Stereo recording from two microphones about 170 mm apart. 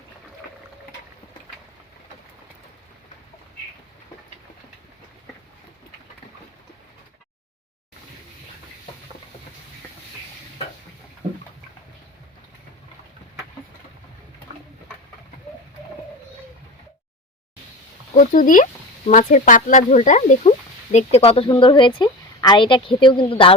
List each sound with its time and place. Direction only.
18.3 s a woman's voice: 50° left (ahead or behind); by 23.6 s 30° left (ahead or behind)